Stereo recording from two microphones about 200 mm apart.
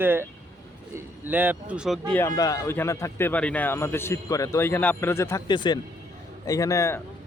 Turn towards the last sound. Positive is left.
turn(degrees=15)  # may be behind; listen again after turning